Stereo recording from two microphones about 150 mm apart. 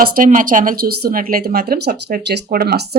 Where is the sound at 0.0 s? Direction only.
70° right (ahead or behind).